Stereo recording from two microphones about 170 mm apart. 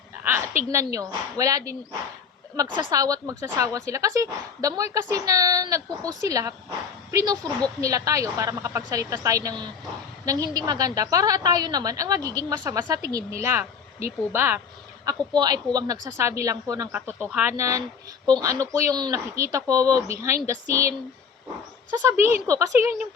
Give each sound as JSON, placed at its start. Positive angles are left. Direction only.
{"t": 0.2, "sound": "a sound", "side_deg": -15}
{"t": 0.9, "sound": "a woman's voice", "side_deg": -20}
{"t": 15.0, "sound": "a woman's voice", "side_deg": -25}